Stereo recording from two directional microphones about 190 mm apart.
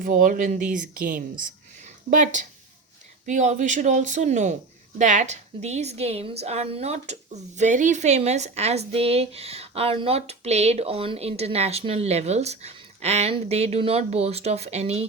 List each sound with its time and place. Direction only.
0.0 s a woman's voice: 45° right (ahead or behind)